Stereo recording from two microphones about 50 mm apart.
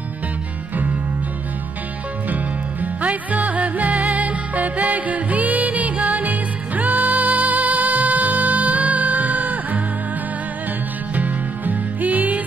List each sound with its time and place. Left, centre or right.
2.2 s music: right
11.1 s music: right